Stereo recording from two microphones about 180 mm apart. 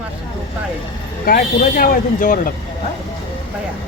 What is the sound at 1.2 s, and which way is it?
Speech, 55° left (ahead or behind).